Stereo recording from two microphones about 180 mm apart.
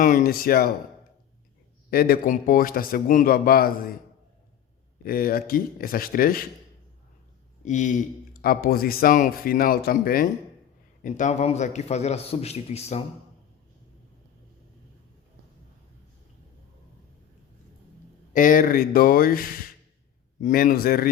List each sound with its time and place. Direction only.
0.0 s speech: 50° left (ahead or behind)
1.9 s a man's voice: 55° left (ahead or behind)
5.0 s speech: 55° left (ahead or behind)
7.6 s speech: 45° left (ahead or behind)
11.0 s a man's voice: 40° left (ahead or behind)
18.3 s a man's voice: 50° left (ahead or behind)